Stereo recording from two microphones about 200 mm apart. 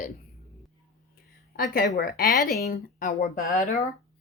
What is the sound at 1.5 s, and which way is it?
A woman's voice, 50° left (ahead or behind).